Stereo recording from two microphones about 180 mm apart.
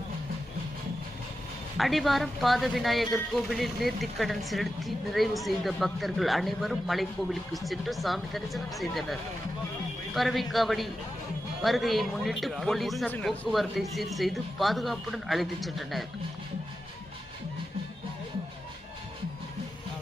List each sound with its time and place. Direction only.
1.8 s speech: centre (ahead or behind)
10.2 s speech: centre (ahead or behind)